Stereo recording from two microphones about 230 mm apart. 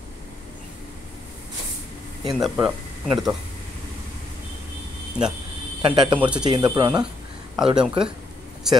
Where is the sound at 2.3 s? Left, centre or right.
Centre.